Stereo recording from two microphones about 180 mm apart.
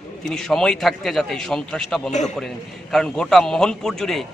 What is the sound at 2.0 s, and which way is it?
Speech, 40° left (ahead or behind).